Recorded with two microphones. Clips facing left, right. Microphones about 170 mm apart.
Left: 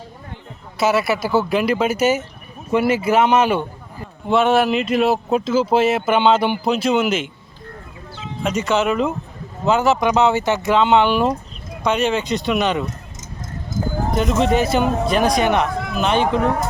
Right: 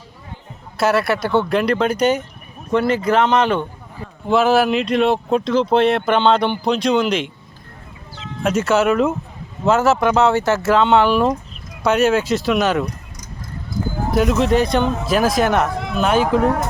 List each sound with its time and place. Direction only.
0.8 s speech: centre (ahead or behind)
8.4 s speech: 5° right (ahead or behind)
14.1 s speech: 5° right (ahead or behind)